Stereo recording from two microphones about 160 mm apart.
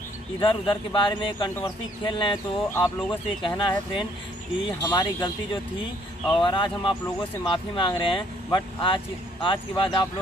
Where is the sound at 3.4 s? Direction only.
30° left (ahead or behind).